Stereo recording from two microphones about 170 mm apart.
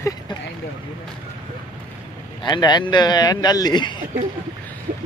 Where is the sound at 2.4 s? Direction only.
25° left (ahead or behind).